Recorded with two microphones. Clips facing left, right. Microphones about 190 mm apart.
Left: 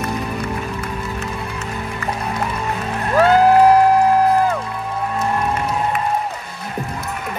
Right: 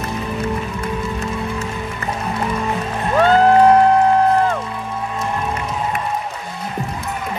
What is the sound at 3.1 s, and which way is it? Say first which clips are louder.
Music: even; 5° left (ahead or behind).